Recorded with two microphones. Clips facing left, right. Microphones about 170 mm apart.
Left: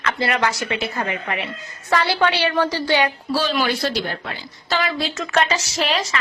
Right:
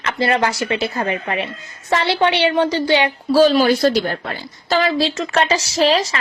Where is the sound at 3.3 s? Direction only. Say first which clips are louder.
Right 13 dB; 45° right (ahead or behind).